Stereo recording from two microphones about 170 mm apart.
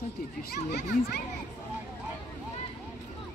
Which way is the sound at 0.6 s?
70° left (ahead or behind).